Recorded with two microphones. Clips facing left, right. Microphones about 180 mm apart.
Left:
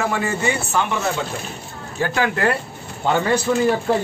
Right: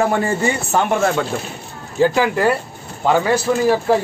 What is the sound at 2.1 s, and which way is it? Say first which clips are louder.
Speech: right 3 dB; 10° right (ahead or behind).